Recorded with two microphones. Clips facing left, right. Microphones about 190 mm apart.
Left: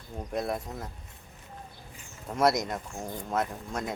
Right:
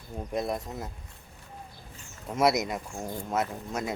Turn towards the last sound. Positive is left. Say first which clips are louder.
# right 1 dB
turn(degrees=-5)  # may be behind; listen again after turning